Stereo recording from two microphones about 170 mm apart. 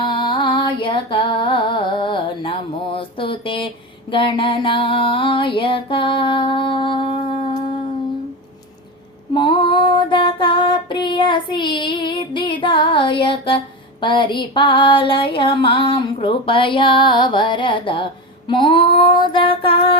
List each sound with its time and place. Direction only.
0.0 s music: 30° left (ahead or behind)
4.1 s a sound: 30° left (ahead or behind)
9.3 s female singing: 30° left (ahead or behind)